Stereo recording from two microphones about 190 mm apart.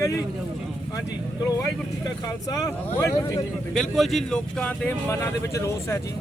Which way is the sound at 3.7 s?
Centre (ahead or behind).